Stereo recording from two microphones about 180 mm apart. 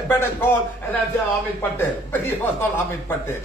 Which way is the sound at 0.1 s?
10° left (ahead or behind).